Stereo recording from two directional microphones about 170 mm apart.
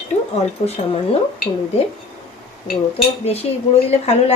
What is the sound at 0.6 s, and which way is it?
Speech, 40° left (ahead or behind).